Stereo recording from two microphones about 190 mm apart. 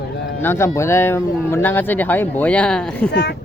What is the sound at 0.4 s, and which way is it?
Speech, 15° left (ahead or behind).